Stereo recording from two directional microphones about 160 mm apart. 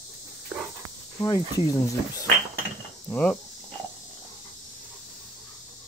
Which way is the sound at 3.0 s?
10° left (ahead or behind).